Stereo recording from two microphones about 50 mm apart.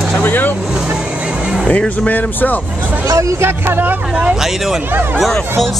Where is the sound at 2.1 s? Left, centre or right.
Left.